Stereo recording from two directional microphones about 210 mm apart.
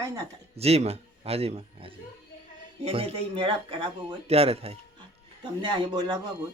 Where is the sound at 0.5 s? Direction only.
30° right (ahead or behind).